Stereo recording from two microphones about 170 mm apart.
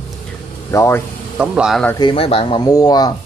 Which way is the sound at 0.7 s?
20° left (ahead or behind).